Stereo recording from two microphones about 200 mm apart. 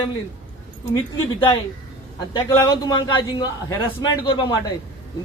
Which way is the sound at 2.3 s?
15° left (ahead or behind).